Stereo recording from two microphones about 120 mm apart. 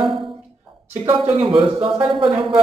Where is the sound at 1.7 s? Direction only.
45° right (ahead or behind).